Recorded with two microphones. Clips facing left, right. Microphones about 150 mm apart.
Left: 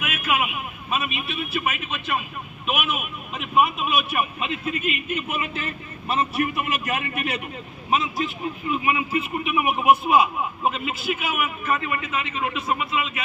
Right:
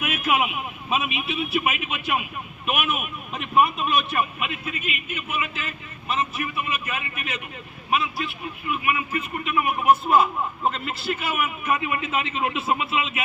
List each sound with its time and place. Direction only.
0.9 s a man's voice: 15° right (ahead or behind)
2.6 s a man's voice: centre (ahead or behind)
4.4 s a man's voice: 30° left (ahead or behind)
7.9 s a man's voice: 20° left (ahead or behind); by 11.5 s centre (ahead or behind)
11.6 s speech: 15° right (ahead or behind)